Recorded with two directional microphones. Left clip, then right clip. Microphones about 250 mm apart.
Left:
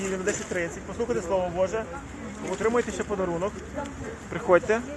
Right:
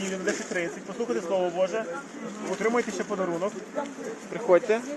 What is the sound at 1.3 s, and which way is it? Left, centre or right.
Speech, centre.